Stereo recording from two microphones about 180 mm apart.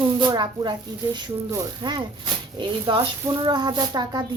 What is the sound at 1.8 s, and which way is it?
Speech, 25° right (ahead or behind).